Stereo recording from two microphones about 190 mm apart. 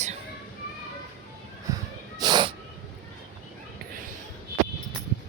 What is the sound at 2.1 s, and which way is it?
Cat, 20° right (ahead or behind).